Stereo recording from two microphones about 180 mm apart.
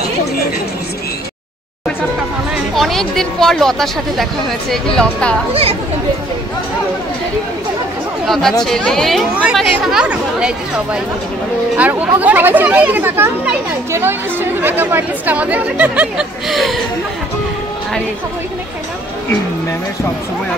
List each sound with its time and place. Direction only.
2.5 s a woman's voice: centre (ahead or behind)
5.5 s speech: 35° right (ahead or behind)
8.3 s a woman's voice: centre (ahead or behind)